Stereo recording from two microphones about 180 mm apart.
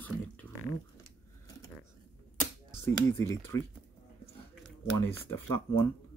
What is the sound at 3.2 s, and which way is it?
Speech, 15° left (ahead or behind).